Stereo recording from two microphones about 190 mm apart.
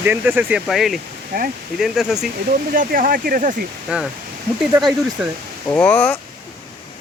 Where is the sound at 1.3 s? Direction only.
55° right (ahead or behind).